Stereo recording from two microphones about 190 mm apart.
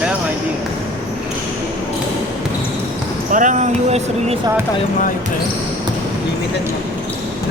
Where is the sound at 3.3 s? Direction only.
40° right (ahead or behind).